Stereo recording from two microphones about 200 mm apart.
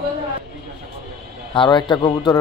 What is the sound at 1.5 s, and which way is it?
Speech, 25° left (ahead or behind).